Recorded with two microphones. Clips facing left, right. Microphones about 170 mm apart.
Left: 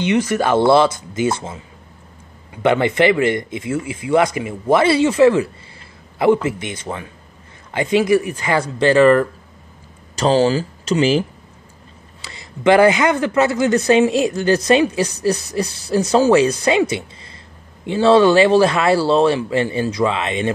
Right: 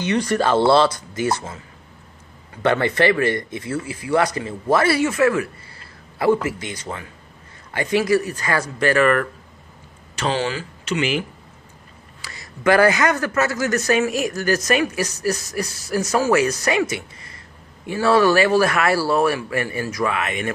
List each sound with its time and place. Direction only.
0.3 s a man's voice: 15° left (ahead or behind); by 11.2 s 35° left (ahead or behind)
12.3 s a man's voice: 25° left (ahead or behind)